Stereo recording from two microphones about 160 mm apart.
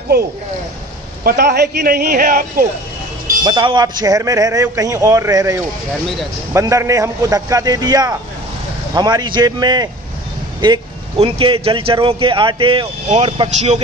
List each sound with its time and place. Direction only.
1.2 s a man's voice: 85° right; by 2.4 s 65° right (ahead or behind)
3.4 s a man's voice: 25° right (ahead or behind)